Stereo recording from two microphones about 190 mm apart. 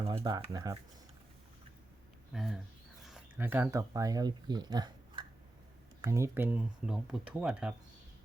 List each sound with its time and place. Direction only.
0.0 s speech: 25° right (ahead or behind)
2.3 s speech: centre (ahead or behind)